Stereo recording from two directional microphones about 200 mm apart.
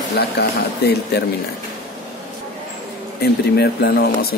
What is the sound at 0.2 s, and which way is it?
Speech, 55° left (ahead or behind).